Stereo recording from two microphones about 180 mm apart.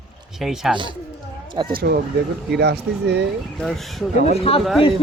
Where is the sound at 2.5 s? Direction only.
65° right (ahead or behind).